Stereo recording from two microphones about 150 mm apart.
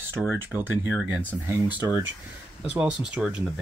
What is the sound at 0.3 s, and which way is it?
Speech, 15° right (ahead or behind).